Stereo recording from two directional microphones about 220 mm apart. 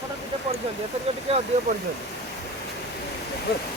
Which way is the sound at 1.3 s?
30° right (ahead or behind).